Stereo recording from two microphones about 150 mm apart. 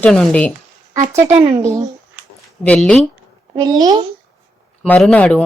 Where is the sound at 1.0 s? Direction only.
20° right (ahead or behind).